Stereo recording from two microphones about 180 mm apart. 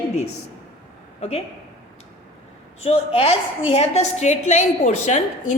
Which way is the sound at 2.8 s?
35° left (ahead or behind).